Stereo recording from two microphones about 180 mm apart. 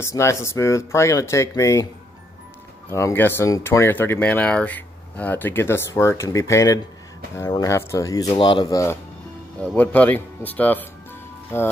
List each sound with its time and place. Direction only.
0.0 s speech: 15° left (ahead or behind)
2.9 s speech: 15° left (ahead or behind)